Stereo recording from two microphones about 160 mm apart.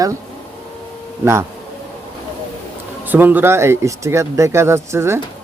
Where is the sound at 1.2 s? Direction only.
15° right (ahead or behind).